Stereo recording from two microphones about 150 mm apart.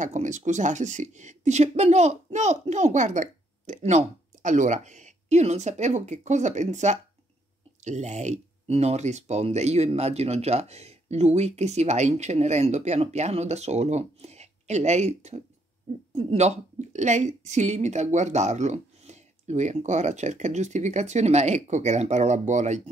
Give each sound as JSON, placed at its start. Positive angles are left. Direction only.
{"t": 0.0, "sound": "speech", "side_deg": -55}